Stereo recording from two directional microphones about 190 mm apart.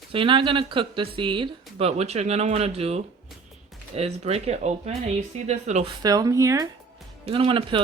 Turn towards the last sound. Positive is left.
turn(degrees=-25)  # may be behind; listen again after turning